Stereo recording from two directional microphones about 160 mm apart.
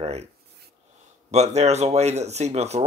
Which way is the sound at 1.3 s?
45° right (ahead or behind).